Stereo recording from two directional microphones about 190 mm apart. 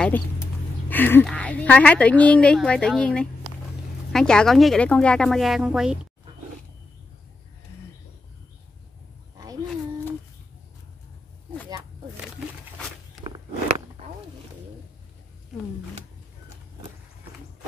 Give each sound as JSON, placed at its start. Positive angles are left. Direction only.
{"t": 0.8, "sound": "a woman's voice", "side_deg": 10}
{"t": 13.2, "sound": "walk", "side_deg": -25}